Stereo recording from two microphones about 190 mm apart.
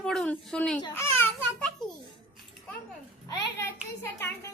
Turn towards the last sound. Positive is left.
turn(degrees=15)  # may be behind; listen again after turning